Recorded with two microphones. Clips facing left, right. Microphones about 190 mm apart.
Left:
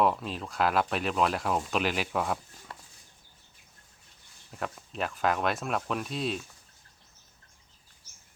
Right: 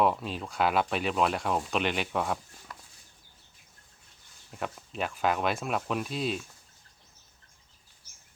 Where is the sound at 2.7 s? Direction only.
30° left (ahead or behind).